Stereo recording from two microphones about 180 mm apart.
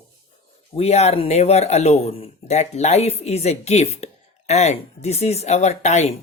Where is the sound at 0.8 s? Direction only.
35° left (ahead or behind).